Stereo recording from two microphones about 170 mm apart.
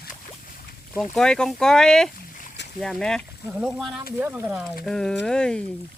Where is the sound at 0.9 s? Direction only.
5° left (ahead or behind).